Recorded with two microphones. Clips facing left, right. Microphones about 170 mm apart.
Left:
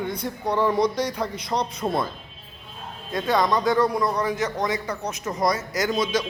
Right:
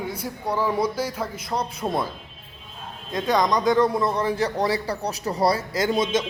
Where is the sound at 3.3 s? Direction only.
20° right (ahead or behind).